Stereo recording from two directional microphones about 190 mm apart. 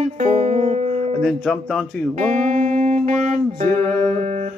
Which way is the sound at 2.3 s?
40° right (ahead or behind).